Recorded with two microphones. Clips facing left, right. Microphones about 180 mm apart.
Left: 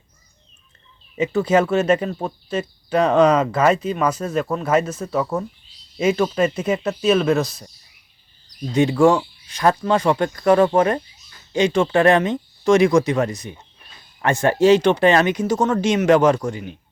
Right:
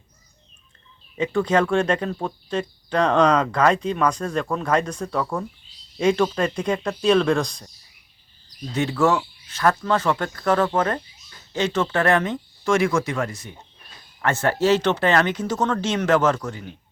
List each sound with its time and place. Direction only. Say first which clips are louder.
1.1 s speech: left 3 dB; 5° left (ahead or behind)
8.7 s speech: left 5 dB; 15° left (ahead or behind)